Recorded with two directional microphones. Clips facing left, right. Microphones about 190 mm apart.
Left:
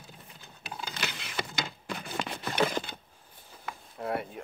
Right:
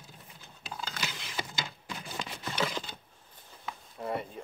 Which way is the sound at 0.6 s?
65° left (ahead or behind).